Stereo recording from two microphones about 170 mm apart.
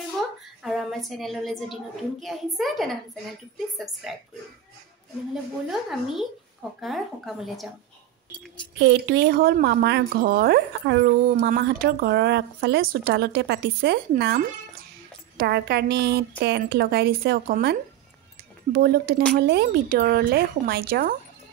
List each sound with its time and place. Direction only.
0.7 s a woman's voice: centre (ahead or behind)
5.3 s a woman's voice: centre (ahead or behind)
8.7 s speech: 85° right; by 21.2 s 60° right (ahead or behind)